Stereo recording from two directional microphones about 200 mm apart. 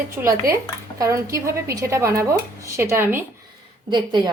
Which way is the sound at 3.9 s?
25° right (ahead or behind).